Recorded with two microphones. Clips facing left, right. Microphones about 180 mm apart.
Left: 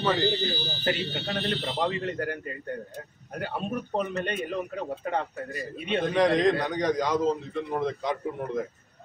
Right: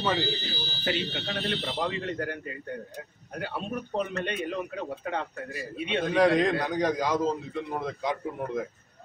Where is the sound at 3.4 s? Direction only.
45° left (ahead or behind).